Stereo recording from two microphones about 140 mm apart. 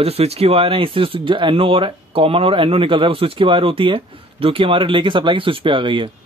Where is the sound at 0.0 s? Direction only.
45° right (ahead or behind).